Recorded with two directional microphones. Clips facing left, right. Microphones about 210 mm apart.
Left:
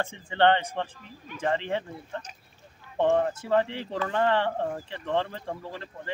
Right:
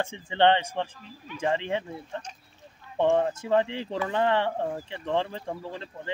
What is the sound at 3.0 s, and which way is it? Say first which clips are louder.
Speech: even; 15° right (ahead or behind).